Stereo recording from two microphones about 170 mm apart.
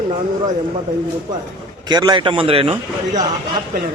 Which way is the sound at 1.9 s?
25° right (ahead or behind).